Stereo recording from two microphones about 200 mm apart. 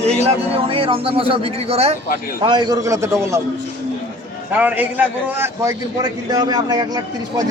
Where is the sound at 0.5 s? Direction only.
25° right (ahead or behind).